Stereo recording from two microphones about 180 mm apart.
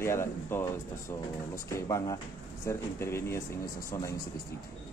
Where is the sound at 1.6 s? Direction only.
15° left (ahead or behind).